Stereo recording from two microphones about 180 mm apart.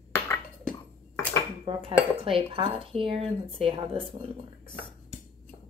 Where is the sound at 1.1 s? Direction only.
10° left (ahead or behind).